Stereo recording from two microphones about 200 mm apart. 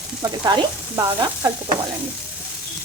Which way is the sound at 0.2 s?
20° right (ahead or behind).